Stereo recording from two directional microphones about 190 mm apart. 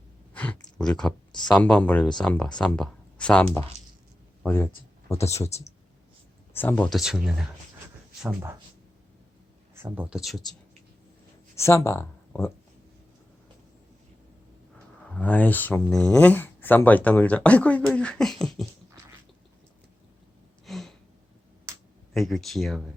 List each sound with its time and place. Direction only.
0.3 s a sound: 5° left (ahead or behind)
1.5 s speech: 5° left (ahead or behind)
5.5 s speech: 35° left (ahead or behind)
6.5 s speech: 10° left (ahead or behind)
6.9 s speech: centre (ahead or behind)
9.7 s speech: 10° right (ahead or behind)
11.5 s speech: 15° left (ahead or behind)
15.1 s speech: 5° left (ahead or behind)
17.9 s beatboxing: 5° left (ahead or behind)
20.7 s a sound: centre (ahead or behind)
22.1 s speech: centre (ahead or behind)